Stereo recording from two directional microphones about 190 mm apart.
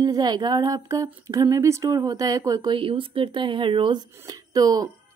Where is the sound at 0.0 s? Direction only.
20° right (ahead or behind).